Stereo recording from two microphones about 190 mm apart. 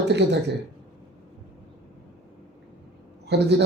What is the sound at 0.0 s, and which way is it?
Speech, 65° right (ahead or behind).